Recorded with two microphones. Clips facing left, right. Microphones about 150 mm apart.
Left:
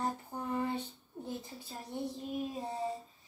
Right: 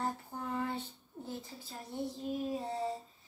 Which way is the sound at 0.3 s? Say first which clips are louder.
Left 1 dB; 15° left (ahead or behind).